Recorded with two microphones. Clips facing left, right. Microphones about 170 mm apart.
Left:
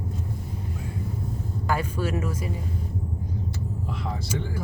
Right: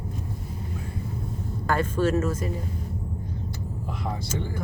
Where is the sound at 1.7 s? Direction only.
10° left (ahead or behind).